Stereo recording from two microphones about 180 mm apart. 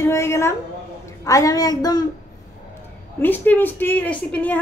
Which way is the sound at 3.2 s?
10° left (ahead or behind).